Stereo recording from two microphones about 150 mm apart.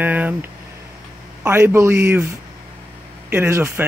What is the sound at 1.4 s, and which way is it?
Speech, 15° right (ahead or behind).